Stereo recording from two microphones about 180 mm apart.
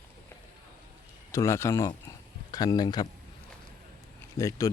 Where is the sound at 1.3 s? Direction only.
15° left (ahead or behind).